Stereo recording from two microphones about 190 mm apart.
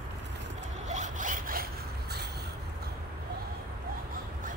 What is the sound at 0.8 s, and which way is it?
Sawing, 40° right (ahead or behind).